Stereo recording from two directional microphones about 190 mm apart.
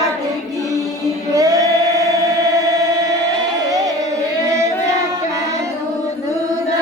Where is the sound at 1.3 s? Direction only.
20° right (ahead or behind).